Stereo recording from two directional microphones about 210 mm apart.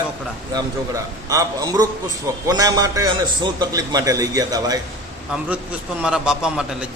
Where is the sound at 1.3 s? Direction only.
15° right (ahead or behind).